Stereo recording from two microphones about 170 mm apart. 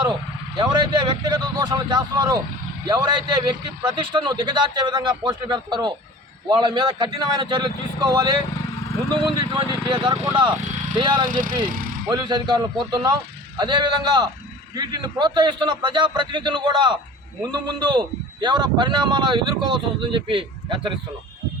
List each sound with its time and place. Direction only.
0.1 s a man's voice: 25° right (ahead or behind)
11.3 s speech: 55° right (ahead or behind)
12.1 s a man's voice: 25° right (ahead or behind)